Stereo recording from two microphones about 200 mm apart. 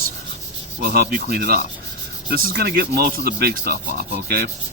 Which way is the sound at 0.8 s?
55° right (ahead or behind).